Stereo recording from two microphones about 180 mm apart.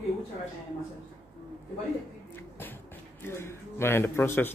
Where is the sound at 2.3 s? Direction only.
10° left (ahead or behind).